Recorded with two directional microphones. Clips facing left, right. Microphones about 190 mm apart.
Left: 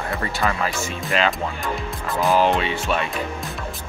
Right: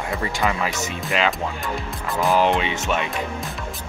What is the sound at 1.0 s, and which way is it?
Speech, 10° right (ahead or behind).